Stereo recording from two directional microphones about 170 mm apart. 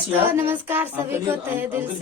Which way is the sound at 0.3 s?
10° right (ahead or behind).